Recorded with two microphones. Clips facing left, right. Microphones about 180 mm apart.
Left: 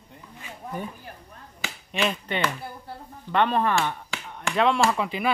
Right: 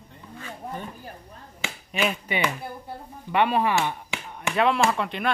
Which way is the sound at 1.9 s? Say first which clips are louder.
Even; 5° right (ahead or behind).